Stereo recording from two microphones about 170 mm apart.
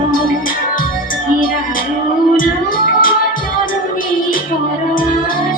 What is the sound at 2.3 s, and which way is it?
Music, 55° left (ahead or behind).